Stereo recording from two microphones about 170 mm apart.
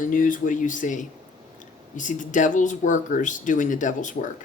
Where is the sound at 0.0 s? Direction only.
50° left (ahead or behind).